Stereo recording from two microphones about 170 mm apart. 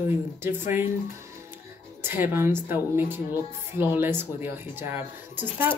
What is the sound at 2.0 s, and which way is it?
Speech, 15° right (ahead or behind).